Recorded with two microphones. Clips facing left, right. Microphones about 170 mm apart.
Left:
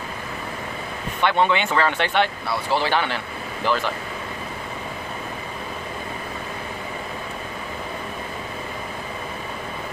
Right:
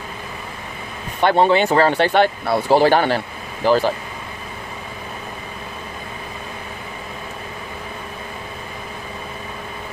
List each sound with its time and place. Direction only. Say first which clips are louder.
1.2 s speech: right 5 dB; 35° right (ahead or behind)